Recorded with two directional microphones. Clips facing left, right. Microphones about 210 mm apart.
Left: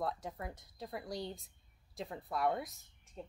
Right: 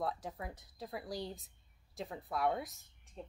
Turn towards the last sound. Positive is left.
turn(degrees=0)  # may be behind; listen again after turning